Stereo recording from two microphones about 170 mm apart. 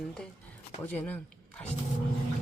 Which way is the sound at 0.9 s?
10° left (ahead or behind).